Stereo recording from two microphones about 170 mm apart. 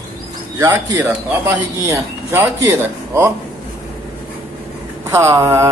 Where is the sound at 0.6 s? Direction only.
20° right (ahead or behind).